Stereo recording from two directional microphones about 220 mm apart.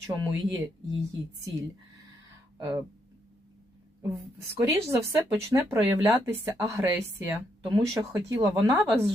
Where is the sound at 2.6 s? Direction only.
15° right (ahead or behind).